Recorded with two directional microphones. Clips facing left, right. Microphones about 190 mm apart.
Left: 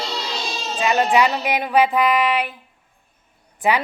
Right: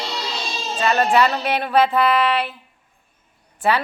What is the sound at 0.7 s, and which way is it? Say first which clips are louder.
Music: even; 15° left (ahead or behind).